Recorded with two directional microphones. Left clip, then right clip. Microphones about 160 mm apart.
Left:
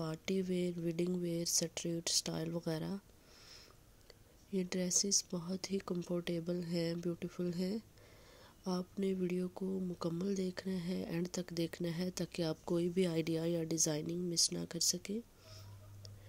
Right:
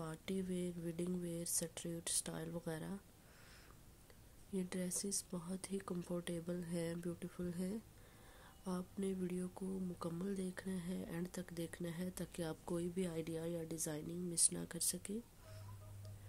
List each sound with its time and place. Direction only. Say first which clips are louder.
0.0 s speech: left 7 dB; 30° left (ahead or behind)
4.6 s speech: left 8 dB; 25° left (ahead or behind)